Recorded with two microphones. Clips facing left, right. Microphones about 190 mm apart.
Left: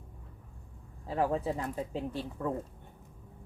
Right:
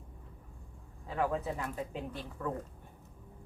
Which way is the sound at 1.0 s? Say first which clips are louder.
Left 3 dB; 35° left (ahead or behind).